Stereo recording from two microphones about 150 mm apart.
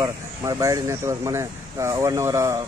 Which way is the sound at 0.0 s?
25° right (ahead or behind).